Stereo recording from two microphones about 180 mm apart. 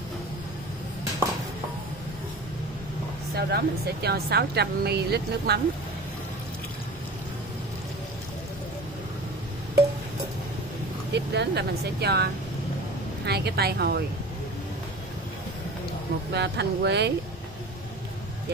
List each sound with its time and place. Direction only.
3.3 s speech: 65° right (ahead or behind)
11.1 s speech: 70° right (ahead or behind)
16.3 s speech: 70° right (ahead or behind)